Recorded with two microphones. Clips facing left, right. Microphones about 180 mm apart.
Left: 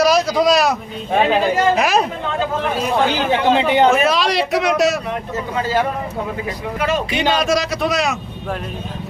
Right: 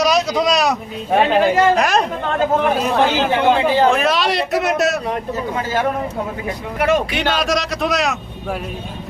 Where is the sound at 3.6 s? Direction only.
20° left (ahead or behind).